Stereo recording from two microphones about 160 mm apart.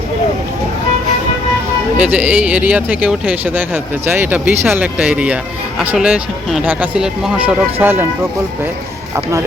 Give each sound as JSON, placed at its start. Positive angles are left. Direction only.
{"t": 2.0, "sound": "speech", "side_deg": -10}